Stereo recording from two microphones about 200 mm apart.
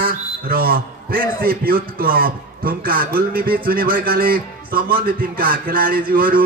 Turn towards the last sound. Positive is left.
turn(degrees=-45)  # may be behind; listen again after turning